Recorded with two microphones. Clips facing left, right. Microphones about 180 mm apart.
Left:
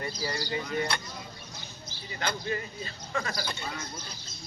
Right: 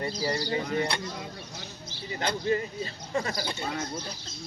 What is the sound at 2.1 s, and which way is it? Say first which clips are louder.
Speech: right 5 dB; 30° right (ahead or behind).